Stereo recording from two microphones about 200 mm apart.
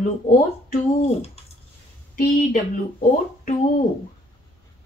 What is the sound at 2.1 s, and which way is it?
Speech, 40° left (ahead or behind).